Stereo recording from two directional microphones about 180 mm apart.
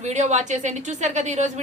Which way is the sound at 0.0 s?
40° right (ahead or behind).